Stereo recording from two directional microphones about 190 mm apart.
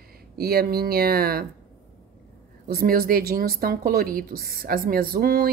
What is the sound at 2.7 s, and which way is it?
Speech, 50° right (ahead or behind).